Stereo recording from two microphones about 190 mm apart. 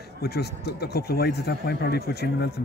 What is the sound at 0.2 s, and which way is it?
A man's voice, 60° left (ahead or behind).